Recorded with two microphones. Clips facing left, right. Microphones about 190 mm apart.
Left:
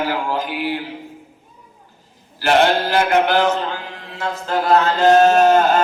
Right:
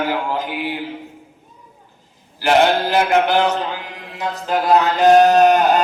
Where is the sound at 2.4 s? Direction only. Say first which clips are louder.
Right 1 dB; 15° right (ahead or behind).